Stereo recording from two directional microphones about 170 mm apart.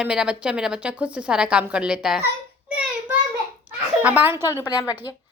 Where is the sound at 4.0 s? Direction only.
10° right (ahead or behind).